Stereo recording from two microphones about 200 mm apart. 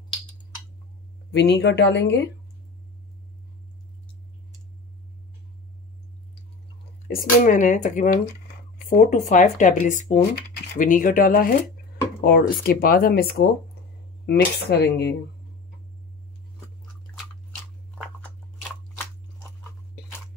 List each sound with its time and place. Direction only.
1.3 s speech: 55° left (ahead or behind)
7.1 s speech: 40° left (ahead or behind)
14.2 s speech: 55° left (ahead or behind)